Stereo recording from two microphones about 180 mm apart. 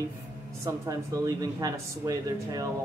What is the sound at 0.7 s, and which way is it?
Speech, 20° right (ahead or behind).